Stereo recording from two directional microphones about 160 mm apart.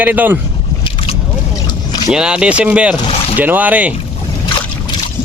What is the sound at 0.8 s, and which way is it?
Boat, 35° left (ahead or behind).